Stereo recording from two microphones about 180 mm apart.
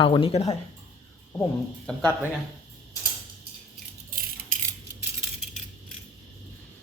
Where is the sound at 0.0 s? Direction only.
30° left (ahead or behind).